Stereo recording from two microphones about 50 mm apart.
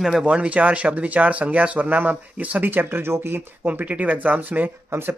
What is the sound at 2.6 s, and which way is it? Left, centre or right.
Speech, right.